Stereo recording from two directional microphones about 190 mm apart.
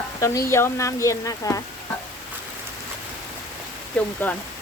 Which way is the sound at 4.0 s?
5° left (ahead or behind).